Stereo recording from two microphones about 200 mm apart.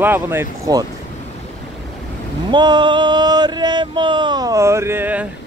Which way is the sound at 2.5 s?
20° right (ahead or behind).